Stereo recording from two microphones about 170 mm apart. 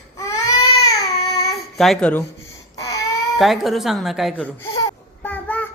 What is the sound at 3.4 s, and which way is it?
Speech, centre (ahead or behind).